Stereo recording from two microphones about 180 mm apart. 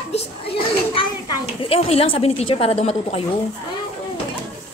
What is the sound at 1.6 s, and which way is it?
A woman's voice, 35° left (ahead or behind).